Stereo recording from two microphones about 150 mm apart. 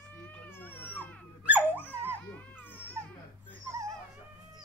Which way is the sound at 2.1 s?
10° left (ahead or behind).